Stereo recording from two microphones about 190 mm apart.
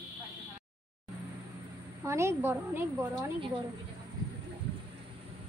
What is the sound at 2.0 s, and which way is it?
A woman's voice, 15° right (ahead or behind).